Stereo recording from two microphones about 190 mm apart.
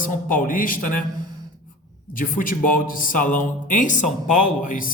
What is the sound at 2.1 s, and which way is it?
A man's voice, 45° left (ahead or behind).